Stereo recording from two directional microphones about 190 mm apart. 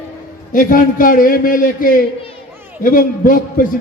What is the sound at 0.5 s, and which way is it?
A man's voice, 45° left (ahead or behind).